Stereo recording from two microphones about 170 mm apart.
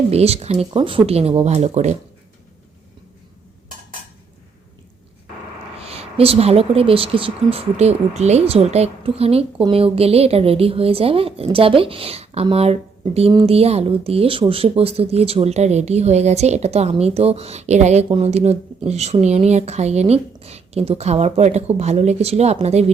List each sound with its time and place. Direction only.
0.1 s speech: 35° right (ahead or behind)
5.8 s speech: 35° right (ahead or behind)